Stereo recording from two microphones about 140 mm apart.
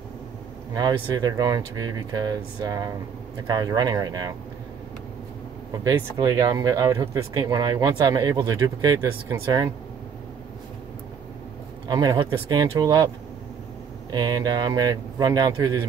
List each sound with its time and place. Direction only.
0.7 s speech: 30° right (ahead or behind)
5.7 s speech: 30° right (ahead or behind)
11.9 s speech: 30° right (ahead or behind)
14.1 s speech: 30° right (ahead or behind)